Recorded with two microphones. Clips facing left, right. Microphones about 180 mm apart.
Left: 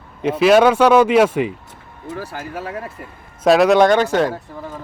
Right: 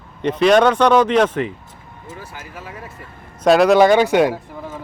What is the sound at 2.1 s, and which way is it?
Speech, 60° left (ahead or behind).